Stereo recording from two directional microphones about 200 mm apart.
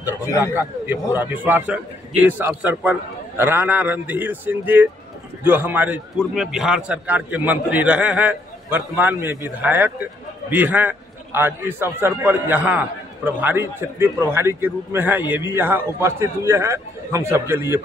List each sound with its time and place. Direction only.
0.2 s a man's voice: 15° left (ahead or behind)
1.1 s a man's voice: 10° right (ahead or behind)